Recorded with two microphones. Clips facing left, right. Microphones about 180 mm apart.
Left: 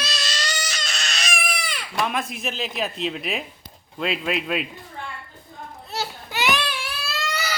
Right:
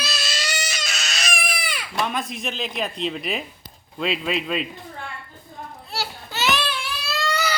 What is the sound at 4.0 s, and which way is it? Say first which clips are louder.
Speech: right 1 dB; centre (ahead or behind).